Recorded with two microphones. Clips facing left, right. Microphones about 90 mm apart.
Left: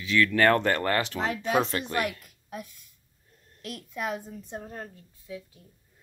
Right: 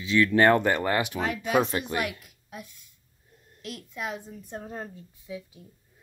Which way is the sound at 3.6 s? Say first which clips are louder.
Left 2 dB; 50° left (ahead or behind).